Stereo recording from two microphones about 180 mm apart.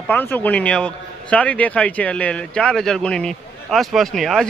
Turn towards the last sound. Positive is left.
turn(degrees=0)  # may be behind; listen again after turning